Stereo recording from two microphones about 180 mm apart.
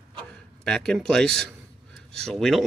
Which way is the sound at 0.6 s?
5° left (ahead or behind).